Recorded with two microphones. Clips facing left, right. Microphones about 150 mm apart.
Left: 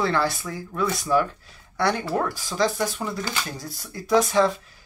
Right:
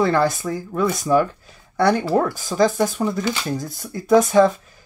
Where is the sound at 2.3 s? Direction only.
50° right (ahead or behind).